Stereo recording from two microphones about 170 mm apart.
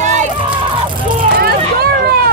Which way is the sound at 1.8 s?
70° right (ahead or behind).